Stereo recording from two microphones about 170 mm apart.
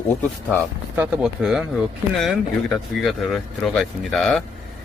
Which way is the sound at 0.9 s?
10° right (ahead or behind).